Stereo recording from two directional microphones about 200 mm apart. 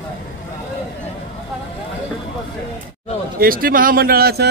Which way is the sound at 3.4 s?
45° right (ahead or behind).